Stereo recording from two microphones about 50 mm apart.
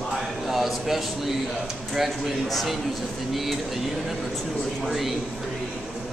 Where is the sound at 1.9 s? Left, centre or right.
Centre.